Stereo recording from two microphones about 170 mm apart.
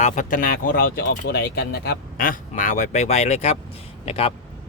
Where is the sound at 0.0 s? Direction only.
50° left (ahead or behind).